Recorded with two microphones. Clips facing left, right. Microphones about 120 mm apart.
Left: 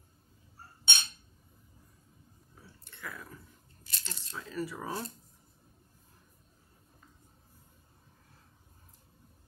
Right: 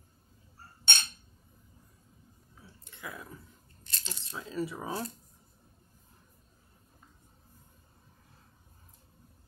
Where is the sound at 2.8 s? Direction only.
20° right (ahead or behind).